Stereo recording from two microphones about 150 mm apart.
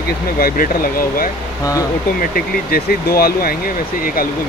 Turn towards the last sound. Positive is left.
turn(degrees=90)